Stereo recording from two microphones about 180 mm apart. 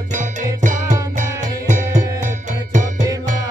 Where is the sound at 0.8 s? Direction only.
20° right (ahead or behind).